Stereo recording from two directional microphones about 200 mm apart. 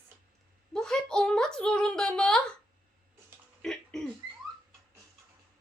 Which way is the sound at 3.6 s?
Centre (ahead or behind).